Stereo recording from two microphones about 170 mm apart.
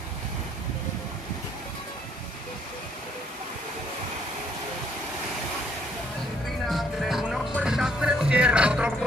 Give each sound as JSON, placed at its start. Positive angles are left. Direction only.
{"t": 6.7, "sound": "music", "side_deg": 0}